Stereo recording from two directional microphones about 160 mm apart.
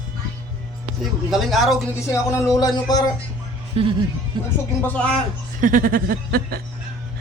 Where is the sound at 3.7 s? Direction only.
35° right (ahead or behind).